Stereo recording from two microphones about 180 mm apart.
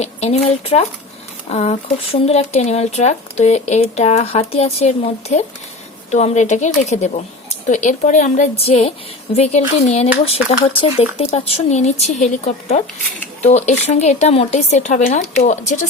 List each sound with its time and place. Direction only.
0.0 s speech: 35° left (ahead or behind)